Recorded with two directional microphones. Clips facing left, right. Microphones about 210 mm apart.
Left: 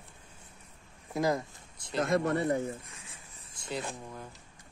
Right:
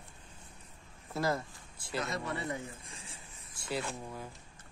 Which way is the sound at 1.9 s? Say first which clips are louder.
Left 8 dB; 50° left (ahead or behind).